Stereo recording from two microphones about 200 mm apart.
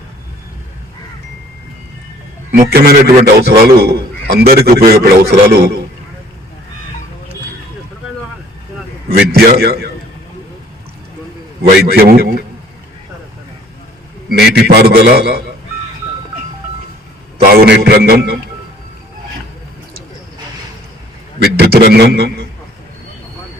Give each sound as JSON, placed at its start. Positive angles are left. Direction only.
{"t": 2.5, "sound": "a man's voice", "side_deg": -50}
{"t": 9.0, "sound": "a man's voice", "side_deg": -50}
{"t": 11.9, "sound": "a man's voice", "side_deg": -50}
{"t": 14.3, "sound": "a man's voice", "side_deg": -55}
{"t": 17.4, "sound": "a man's voice", "side_deg": -50}
{"t": 21.4, "sound": "a man's voice", "side_deg": -55}